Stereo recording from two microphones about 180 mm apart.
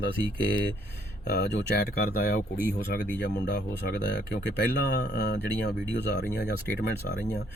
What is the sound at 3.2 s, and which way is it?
Speech, 70° left (ahead or behind).